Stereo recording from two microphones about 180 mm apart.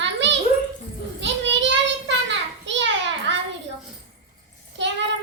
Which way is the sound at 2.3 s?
85° right.